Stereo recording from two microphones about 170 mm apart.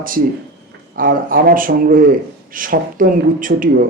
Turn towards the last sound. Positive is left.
turn(degrees=-55)  # may be behind; listen again after turning